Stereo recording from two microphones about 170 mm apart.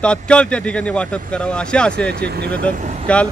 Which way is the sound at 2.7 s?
45° right (ahead or behind).